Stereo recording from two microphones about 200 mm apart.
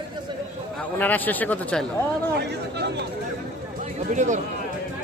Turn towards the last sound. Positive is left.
turn(degrees=-40)  # may be behind; listen again after turning